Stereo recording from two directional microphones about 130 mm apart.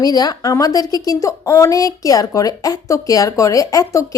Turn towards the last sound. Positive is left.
turn(degrees=25)  # may be behind; listen again after turning